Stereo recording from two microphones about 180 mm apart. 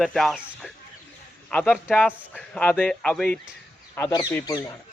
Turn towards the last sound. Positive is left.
turn(degrees=10)  # may be behind; listen again after turning